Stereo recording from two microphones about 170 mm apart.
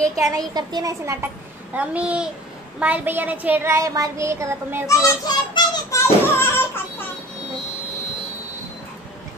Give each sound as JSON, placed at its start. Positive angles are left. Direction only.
{"t": 0.0, "sound": "a child's voice", "side_deg": -20}
{"t": 1.8, "sound": "child singing", "side_deg": -5}
{"t": 4.8, "sound": "a sound", "side_deg": 20}